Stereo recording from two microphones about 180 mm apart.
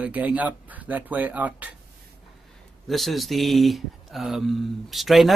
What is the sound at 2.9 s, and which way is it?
Speech, centre (ahead or behind).